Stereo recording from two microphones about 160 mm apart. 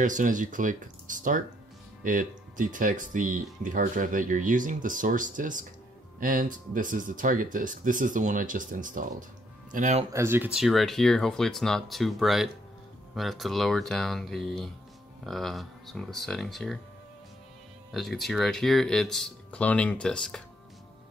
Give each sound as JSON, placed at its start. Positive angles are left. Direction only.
{"t": 0.0, "sound": "speech", "side_deg": -55}
{"t": 10.1, "sound": "speech", "side_deg": -15}
{"t": 10.5, "sound": "speech", "side_deg": 0}
{"t": 17.9, "sound": "speech", "side_deg": 0}